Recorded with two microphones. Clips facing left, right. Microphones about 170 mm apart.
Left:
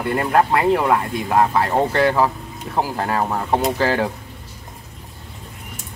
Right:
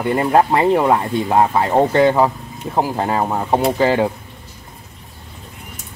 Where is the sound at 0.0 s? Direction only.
20° right (ahead or behind).